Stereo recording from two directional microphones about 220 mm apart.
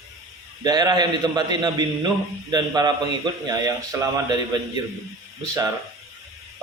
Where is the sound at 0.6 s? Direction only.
20° right (ahead or behind).